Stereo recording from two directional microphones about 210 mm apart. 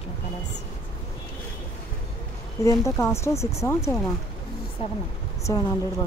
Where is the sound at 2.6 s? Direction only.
15° left (ahead or behind).